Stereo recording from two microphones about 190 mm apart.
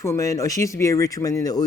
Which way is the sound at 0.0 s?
15° left (ahead or behind).